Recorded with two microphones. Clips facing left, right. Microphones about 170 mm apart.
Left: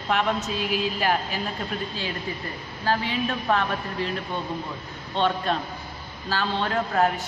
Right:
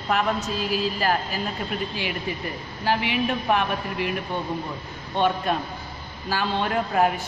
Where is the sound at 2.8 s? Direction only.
15° right (ahead or behind).